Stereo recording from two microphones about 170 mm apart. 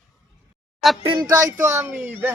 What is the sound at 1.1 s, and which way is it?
Speech, 20° right (ahead or behind).